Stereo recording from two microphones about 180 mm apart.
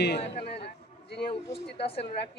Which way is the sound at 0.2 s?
30° left (ahead or behind).